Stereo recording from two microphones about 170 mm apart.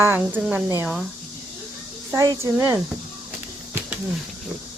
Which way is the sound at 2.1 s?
20° right (ahead or behind).